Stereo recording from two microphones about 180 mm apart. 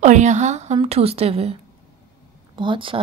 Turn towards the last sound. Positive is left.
turn(degrees=-30)  # may be behind; listen again after turning